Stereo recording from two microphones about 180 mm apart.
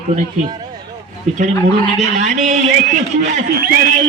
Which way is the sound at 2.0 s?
45° right (ahead or behind).